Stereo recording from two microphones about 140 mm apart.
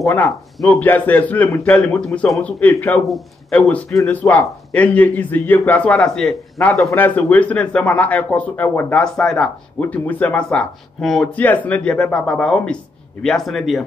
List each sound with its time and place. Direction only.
0.6 s speech: 10° left (ahead or behind)
1.8 s speech: centre (ahead or behind)
2.6 s speech: 15° left (ahead or behind)
3.1 s speech: 5° left (ahead or behind)